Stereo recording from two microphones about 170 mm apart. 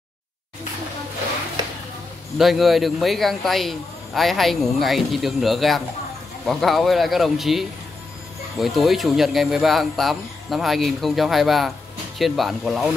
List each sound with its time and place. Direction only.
2.3 s speech: centre (ahead or behind)